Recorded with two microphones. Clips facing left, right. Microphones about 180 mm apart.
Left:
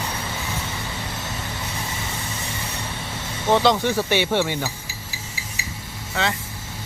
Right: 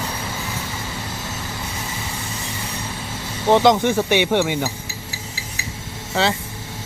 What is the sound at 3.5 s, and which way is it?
Speech, 15° right (ahead or behind).